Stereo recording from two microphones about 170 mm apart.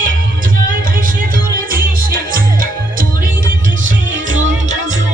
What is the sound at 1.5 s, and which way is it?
Music, 55° right (ahead or behind).